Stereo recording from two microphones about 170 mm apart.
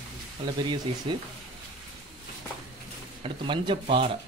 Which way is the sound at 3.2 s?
30° right (ahead or behind).